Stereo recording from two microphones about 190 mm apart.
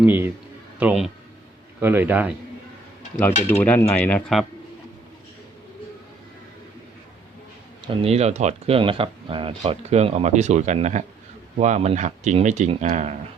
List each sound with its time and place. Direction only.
0.0 s a man's voice: 10° right (ahead or behind)
3.6 s speech: 10° left (ahead or behind)
7.9 s speech: 35° right (ahead or behind)